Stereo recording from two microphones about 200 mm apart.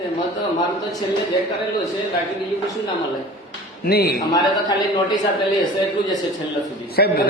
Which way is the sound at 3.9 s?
50° left (ahead or behind).